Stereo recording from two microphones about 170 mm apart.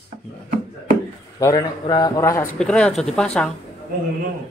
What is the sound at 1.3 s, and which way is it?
A man's voice, 20° left (ahead or behind).